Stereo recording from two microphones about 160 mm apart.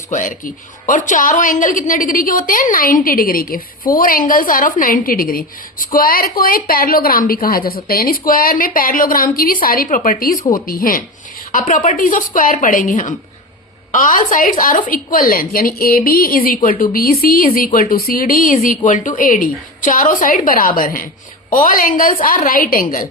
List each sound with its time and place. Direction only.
0.1 s a woman's voice: 55° left (ahead or behind)